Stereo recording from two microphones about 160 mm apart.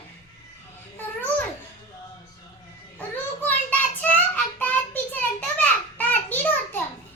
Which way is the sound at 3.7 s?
10° left (ahead or behind).